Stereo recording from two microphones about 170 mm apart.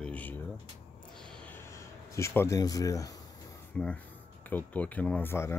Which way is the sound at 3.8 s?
5° left (ahead or behind).